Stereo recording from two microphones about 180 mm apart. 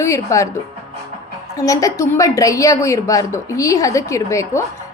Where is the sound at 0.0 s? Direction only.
15° left (ahead or behind).